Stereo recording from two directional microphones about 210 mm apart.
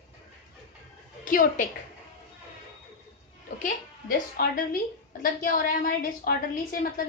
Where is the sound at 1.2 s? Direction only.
40° left (ahead or behind).